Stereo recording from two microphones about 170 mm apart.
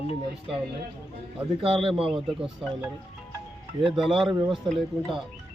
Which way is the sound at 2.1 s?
Centre (ahead or behind).